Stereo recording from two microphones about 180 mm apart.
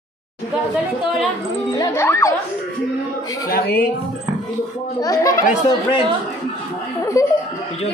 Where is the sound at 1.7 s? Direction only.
15° left (ahead or behind).